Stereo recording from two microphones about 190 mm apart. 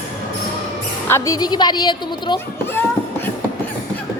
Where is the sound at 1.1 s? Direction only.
15° left (ahead or behind).